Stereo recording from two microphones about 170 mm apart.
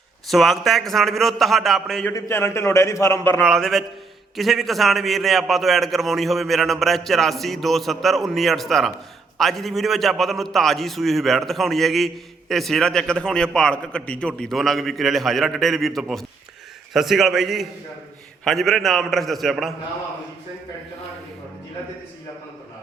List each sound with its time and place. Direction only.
0.3 s a man's voice: centre (ahead or behind)
2.1 s a man's voice: 15° left (ahead or behind)
3.4 s a man's voice: centre (ahead or behind)